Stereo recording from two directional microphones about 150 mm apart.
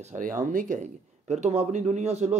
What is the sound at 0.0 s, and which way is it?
Speech, 60° right (ahead or behind).